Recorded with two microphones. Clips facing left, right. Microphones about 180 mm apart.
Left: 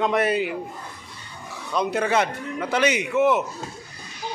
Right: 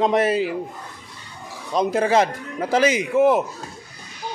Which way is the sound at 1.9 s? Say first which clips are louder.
Right 4 dB; 30° right (ahead or behind).